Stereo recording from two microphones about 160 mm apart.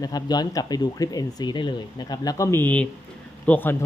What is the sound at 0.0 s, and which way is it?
Speech, 25° left (ahead or behind).